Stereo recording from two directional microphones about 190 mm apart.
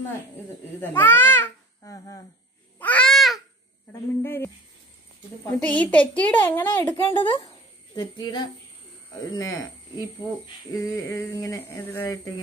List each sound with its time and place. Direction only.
0.7 s babbling: 10° left (ahead or behind)
2.8 s babbling: 5° left (ahead or behind)
3.9 s speech: 10° left (ahead or behind)
7.1 s a woman's voice: 25° left (ahead or behind)